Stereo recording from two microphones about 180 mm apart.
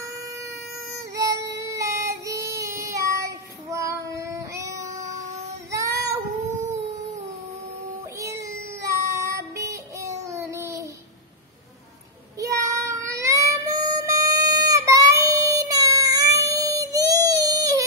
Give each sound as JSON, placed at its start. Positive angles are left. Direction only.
{"t": 0.0, "sound": "a sound", "side_deg": -15}
{"t": 4.7, "sound": "child singing", "side_deg": -40}
{"t": 5.7, "sound": "child singing", "side_deg": -15}
{"t": 6.6, "sound": "dog", "side_deg": -15}
{"t": 8.2, "sound": "child singing", "side_deg": -15}
{"t": 12.4, "sound": "child singing", "side_deg": -15}